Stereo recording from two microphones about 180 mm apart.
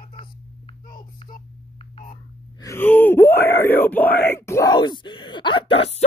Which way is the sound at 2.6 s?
15° left (ahead or behind).